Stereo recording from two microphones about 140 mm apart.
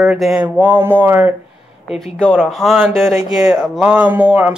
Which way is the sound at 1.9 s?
5° left (ahead or behind).